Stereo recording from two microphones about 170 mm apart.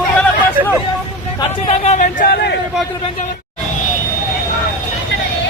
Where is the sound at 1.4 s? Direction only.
40° left (ahead or behind).